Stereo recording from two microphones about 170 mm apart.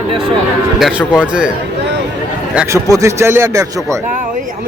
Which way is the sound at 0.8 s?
Centre (ahead or behind).